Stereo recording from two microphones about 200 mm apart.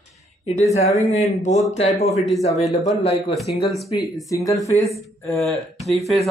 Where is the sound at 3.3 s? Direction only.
Centre (ahead or behind).